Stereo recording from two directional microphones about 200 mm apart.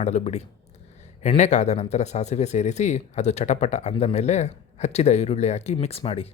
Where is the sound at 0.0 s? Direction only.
35° left (ahead or behind).